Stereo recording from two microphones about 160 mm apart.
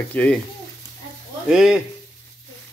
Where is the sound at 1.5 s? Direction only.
5° right (ahead or behind).